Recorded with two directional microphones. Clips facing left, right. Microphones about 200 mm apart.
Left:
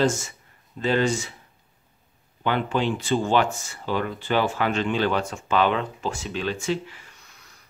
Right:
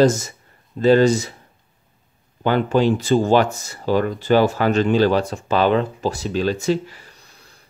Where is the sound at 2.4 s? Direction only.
40° right (ahead or behind).